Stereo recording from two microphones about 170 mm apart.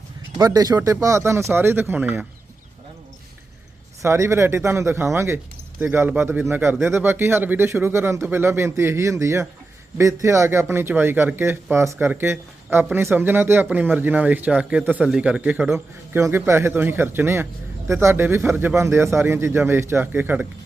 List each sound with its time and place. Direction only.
0.3 s speech: 20° right (ahead or behind)
4.0 s speech: 15° right (ahead or behind)